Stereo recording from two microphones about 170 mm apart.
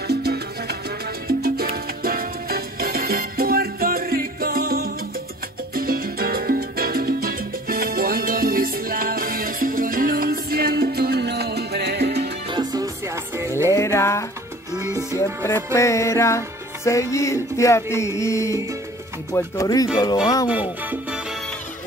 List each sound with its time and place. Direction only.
0.1 s salsa music: 70° right (ahead or behind)
1.2 s music: 65° right (ahead or behind)
12.4 s music: 25° right (ahead or behind)
13.7 s music: 15° left (ahead or behind)
14.8 s music: 20° right (ahead or behind)
15.1 s music: 15° left (ahead or behind)
19.3 s speech: 20° left (ahead or behind)
20.4 s music: 10° right (ahead or behind)